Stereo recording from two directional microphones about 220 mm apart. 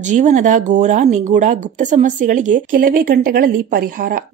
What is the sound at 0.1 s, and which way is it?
Speech, 35° right (ahead or behind).